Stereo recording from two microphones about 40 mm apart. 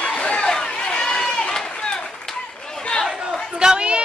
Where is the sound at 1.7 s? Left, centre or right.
Left.